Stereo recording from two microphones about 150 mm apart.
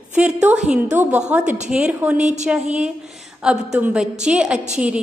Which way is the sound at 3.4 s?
5° right (ahead or behind).